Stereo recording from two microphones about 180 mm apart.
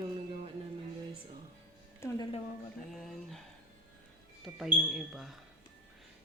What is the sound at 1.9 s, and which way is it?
Speech, 20° left (ahead or behind).